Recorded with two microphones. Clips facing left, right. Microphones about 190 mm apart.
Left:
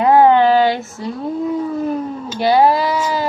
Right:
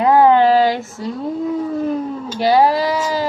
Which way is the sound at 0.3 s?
35° right (ahead or behind).